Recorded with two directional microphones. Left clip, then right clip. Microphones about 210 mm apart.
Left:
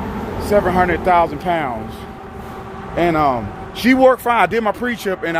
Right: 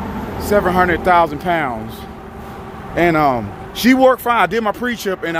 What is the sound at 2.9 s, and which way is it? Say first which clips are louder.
A man's voice: right 2 dB; 20° right (ahead or behind).